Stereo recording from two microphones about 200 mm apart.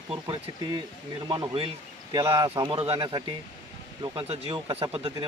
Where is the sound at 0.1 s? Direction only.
25° right (ahead or behind).